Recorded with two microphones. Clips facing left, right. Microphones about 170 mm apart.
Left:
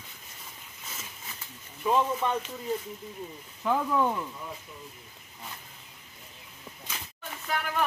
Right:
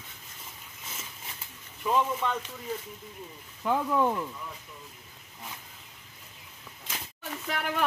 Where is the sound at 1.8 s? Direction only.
15° left (ahead or behind).